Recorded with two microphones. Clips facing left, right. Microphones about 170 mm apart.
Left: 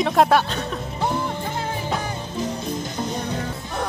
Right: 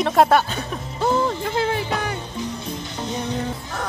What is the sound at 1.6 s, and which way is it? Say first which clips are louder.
Music: right 5 dB; 90° right.